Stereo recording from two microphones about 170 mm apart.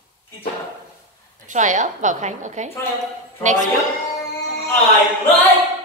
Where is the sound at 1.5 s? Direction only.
45° right (ahead or behind).